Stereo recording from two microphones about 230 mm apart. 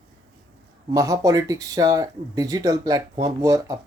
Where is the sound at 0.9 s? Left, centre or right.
Centre.